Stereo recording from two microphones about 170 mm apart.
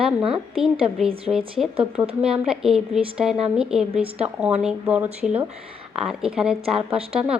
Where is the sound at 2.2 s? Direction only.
5° right (ahead or behind).